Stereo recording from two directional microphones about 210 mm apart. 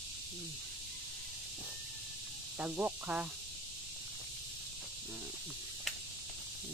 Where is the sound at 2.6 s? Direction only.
10° right (ahead or behind).